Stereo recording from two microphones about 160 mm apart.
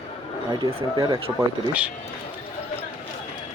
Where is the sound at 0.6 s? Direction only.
25° right (ahead or behind).